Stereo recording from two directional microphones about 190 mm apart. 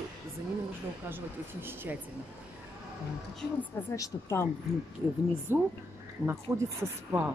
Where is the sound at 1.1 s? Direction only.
10° right (ahead or behind).